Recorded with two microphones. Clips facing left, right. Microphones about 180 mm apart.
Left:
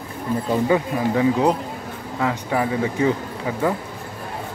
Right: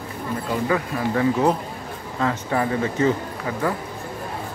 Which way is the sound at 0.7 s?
15° left (ahead or behind).